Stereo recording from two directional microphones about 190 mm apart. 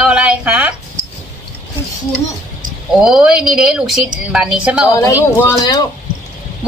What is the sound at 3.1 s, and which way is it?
A woman's voice, 5° right (ahead or behind).